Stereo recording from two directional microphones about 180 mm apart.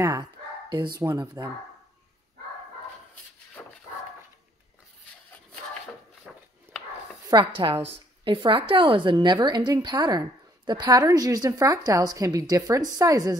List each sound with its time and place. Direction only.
0.0 s speech: 20° right (ahead or behind)
3.6 s dog: 5° left (ahead or behind)
6.3 s a sound: 5° right (ahead or behind)
7.2 s a woman's voice: 25° right (ahead or behind)